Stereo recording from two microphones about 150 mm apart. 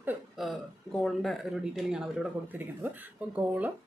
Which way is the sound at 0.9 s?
Centre (ahead or behind).